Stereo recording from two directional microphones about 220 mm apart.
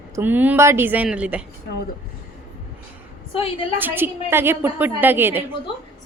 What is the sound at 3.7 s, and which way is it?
A woman's voice, 10° right (ahead or behind).